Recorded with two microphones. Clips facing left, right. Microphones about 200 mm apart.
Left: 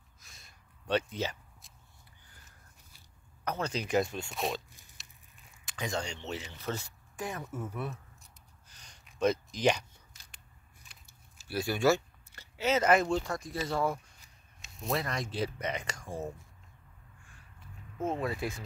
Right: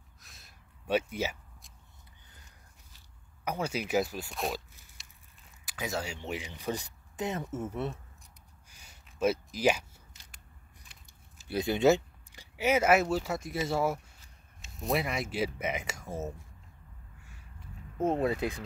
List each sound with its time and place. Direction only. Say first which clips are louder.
0.2 s a sound: right 1 dB; centre (ahead or behind)
3.4 s speech: right 1 dB; 10° right (ahead or behind)
5.7 s speech: even; 5° right (ahead or behind); by 8.3 s 25° right (ahead or behind)
8.6 s a sound: even; 10° right (ahead or behind)
9.2 s speech: even; 5° right (ahead or behind)
11.1 s speech: right 3 dB; 20° right (ahead or behind)
17.9 s speech: right 5 dB; 40° right (ahead or behind)
18.2 s speech: right 5 dB; 20° right (ahead or behind)